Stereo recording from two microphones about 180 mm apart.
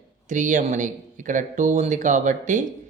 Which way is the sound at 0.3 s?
45° right (ahead or behind).